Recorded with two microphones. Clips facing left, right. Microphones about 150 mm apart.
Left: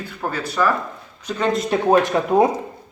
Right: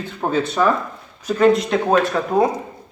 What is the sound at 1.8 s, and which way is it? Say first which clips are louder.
Speech: left 3 dB; 15° left (ahead or behind).